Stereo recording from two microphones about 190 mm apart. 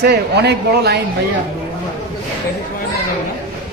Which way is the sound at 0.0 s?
60° right (ahead or behind).